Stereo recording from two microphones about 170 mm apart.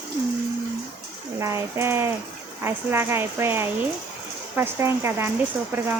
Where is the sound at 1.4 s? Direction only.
15° right (ahead or behind).